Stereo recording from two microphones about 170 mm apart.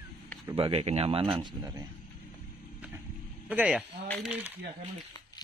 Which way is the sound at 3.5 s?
5° right (ahead or behind).